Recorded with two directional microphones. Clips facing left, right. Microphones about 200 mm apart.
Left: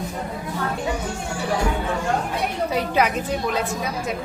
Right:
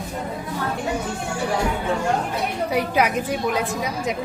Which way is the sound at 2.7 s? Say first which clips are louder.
Right 1 dB; 10° right (ahead or behind).